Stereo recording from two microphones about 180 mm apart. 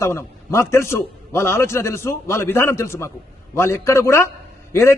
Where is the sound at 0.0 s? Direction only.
15° left (ahead or behind).